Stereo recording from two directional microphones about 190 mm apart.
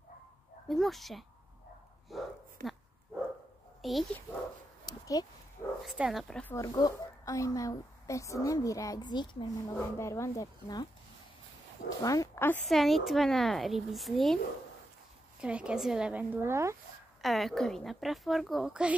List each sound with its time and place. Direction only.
0.7 s speech: centre (ahead or behind)
2.0 s dog: centre (ahead or behind)
3.8 s speech: centre (ahead or behind)
4.8 s a sound: 20° left (ahead or behind)
5.9 s speech: centre (ahead or behind)
6.5 s a woman's voice: 15° left (ahead or behind)
12.0 s speech: 20° left (ahead or behind); by 14.4 s centre (ahead or behind)
15.4 s a woman's voice: 5° right (ahead or behind)
17.2 s speech: centre (ahead or behind)